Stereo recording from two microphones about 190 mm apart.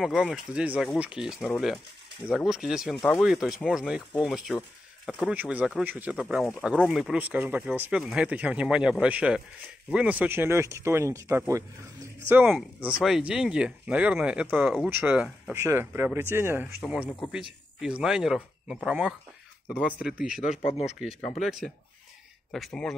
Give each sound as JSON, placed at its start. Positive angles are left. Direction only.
{"t": 0.0, "sound": "speech", "side_deg": 0}
{"t": 20.6, "sound": "speech", "side_deg": 35}
{"t": 21.4, "sound": "speech", "side_deg": 0}